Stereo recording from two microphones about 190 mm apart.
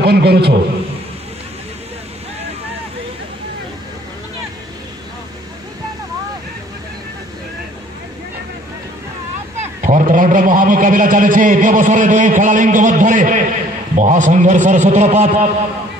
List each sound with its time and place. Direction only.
0.0 s a man's voice: 60° right (ahead or behind)
9.6 s a man's voice: 40° right (ahead or behind)